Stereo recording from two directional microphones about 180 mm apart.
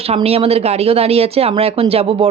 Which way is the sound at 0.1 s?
35° right (ahead or behind).